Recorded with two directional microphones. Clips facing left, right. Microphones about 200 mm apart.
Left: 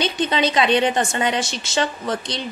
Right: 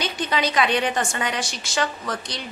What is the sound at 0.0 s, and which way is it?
A woman's voice, 25° left (ahead or behind).